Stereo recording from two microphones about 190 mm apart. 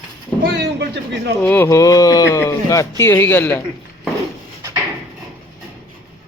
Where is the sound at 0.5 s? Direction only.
65° right (ahead or behind).